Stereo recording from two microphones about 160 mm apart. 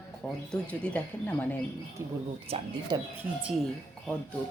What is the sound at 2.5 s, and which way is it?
Speech, 35° right (ahead or behind).